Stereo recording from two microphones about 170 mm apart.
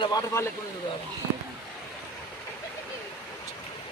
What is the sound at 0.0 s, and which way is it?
Speech, 20° left (ahead or behind).